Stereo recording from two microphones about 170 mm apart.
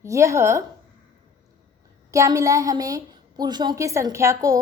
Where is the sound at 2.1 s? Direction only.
20° right (ahead or behind).